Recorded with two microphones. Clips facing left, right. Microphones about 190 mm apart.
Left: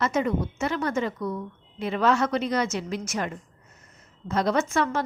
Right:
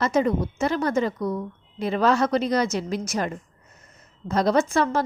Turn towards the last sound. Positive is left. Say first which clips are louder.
# right 3 dB
turn(degrees=-35)  # may be behind; listen again after turning